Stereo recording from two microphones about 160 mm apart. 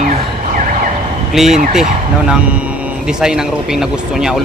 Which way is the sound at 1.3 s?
Centre (ahead or behind).